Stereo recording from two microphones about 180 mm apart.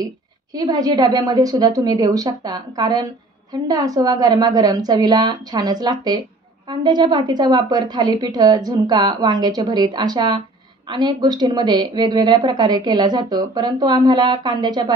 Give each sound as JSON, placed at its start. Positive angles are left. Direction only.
{"t": 0.5, "sound": "a woman's voice", "side_deg": -20}